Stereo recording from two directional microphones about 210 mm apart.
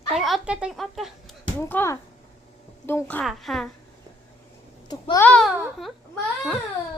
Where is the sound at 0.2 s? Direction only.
Centre (ahead or behind).